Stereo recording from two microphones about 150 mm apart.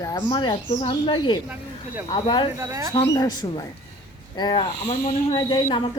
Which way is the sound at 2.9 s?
25° left (ahead or behind).